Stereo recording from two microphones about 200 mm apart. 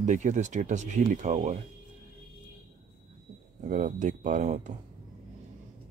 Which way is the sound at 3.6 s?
40° right (ahead or behind).